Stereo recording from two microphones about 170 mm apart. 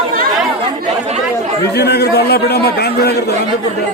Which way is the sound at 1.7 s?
75° left (ahead or behind).